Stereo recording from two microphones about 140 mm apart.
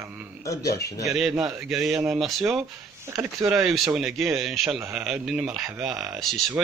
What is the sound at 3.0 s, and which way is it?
Speech, 15° right (ahead or behind).